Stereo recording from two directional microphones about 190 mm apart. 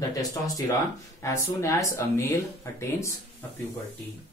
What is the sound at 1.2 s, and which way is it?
Speech, 15° left (ahead or behind).